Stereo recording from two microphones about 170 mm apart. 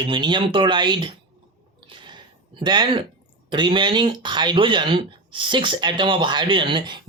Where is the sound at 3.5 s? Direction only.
30° right (ahead or behind).